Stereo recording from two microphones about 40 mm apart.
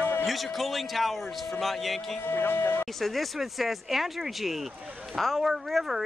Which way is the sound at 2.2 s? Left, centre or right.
Left.